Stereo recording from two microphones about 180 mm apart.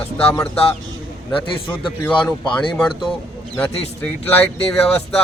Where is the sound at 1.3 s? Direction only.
30° left (ahead or behind).